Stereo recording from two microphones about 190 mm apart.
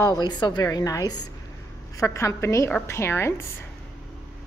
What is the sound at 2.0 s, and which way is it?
A woman's voice, 15° left (ahead or behind).